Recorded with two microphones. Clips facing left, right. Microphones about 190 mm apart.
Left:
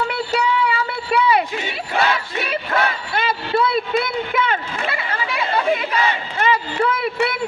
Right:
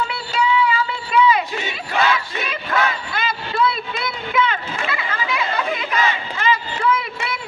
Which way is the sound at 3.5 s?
45° left (ahead or behind).